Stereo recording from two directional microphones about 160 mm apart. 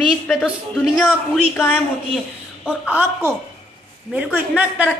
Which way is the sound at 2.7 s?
10° right (ahead or behind).